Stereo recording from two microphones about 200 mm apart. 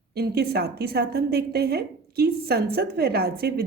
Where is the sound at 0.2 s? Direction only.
50° right (ahead or behind).